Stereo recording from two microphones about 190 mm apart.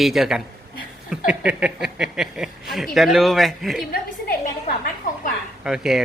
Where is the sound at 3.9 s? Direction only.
50° left (ahead or behind).